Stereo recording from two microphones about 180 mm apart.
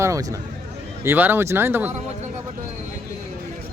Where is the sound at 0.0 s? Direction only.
20° right (ahead or behind).